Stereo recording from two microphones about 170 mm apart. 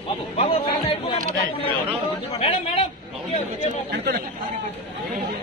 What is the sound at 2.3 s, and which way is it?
Speech, 35° left (ahead or behind).